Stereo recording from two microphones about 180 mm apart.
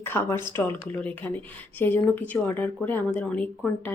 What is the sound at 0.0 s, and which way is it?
Speech, 10° left (ahead or behind).